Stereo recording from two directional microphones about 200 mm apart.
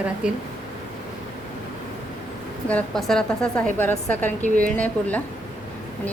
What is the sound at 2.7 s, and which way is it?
A woman's voice, 5° left (ahead or behind).